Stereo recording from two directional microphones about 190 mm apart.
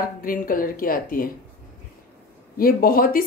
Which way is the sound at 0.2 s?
50° left (ahead or behind).